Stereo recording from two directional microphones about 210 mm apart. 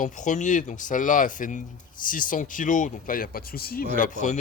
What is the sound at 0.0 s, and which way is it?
Speech, 35° left (ahead or behind).